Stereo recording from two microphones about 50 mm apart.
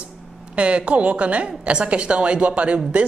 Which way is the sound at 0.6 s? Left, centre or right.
Right.